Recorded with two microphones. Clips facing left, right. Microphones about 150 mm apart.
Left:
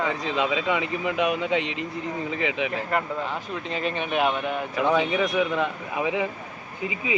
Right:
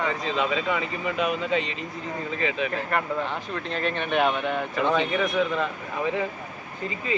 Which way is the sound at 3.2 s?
5° left (ahead or behind).